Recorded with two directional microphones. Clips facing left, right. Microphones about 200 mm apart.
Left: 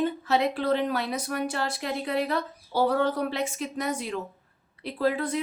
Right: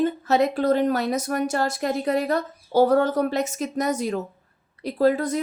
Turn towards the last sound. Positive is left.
turn(degrees=-40)  # may be behind; listen again after turning